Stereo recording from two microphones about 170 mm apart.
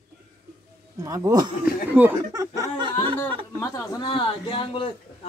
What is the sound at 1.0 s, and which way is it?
Speech, 20° right (ahead or behind).